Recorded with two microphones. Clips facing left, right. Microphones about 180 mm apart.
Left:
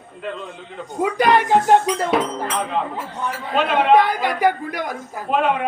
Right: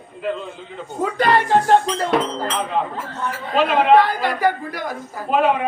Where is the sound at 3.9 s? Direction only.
15° left (ahead or behind).